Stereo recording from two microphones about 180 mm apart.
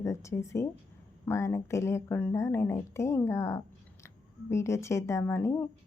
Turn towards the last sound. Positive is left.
turn(degrees=15)  # may be behind; listen again after turning